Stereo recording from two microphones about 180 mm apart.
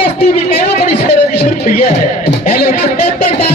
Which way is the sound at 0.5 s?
60° left (ahead or behind).